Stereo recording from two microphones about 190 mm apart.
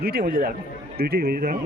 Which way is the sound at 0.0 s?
55° right (ahead or behind).